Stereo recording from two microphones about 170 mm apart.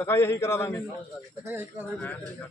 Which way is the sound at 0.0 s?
15° left (ahead or behind).